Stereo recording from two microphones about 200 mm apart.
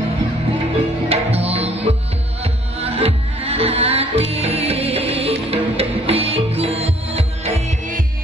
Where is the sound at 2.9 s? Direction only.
30° right (ahead or behind).